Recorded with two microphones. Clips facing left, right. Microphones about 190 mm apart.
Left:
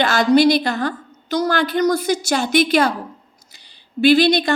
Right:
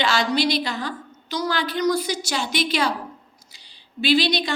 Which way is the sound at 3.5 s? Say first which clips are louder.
Left 9 dB; 50° left (ahead or behind).